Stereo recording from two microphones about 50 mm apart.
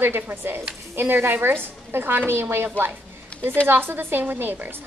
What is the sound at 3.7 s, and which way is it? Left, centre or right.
Speech, right.